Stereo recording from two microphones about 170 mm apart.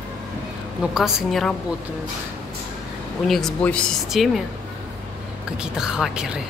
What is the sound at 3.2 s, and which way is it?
A woman's voice, centre (ahead or behind).